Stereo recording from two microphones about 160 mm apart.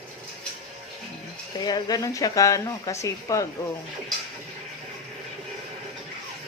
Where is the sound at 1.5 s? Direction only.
25° left (ahead or behind).